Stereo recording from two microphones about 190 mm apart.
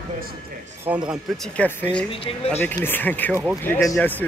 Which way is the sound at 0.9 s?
10° right (ahead or behind).